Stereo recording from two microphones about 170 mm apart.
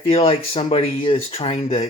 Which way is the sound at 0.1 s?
35° left (ahead or behind).